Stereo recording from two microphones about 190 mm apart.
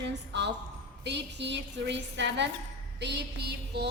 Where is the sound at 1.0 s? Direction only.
65° right (ahead or behind).